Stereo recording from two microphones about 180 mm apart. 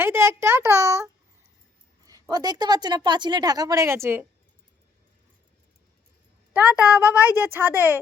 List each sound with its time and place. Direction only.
0.0 s a sound: 15° right (ahead or behind)
2.3 s speech: 20° right (ahead or behind)
6.5 s a woman's voice: 5° right (ahead or behind)